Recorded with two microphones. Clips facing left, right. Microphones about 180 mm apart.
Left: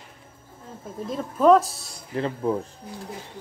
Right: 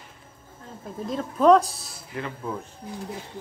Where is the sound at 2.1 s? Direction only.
30° left (ahead or behind).